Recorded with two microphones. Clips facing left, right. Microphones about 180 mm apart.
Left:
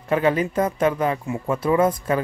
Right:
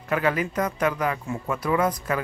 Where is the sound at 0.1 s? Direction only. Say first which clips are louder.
Left 4 dB; 25° left (ahead or behind).